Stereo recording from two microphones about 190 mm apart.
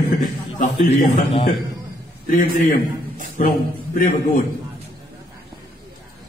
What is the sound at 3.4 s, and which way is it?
A man's voice, 45° left (ahead or behind).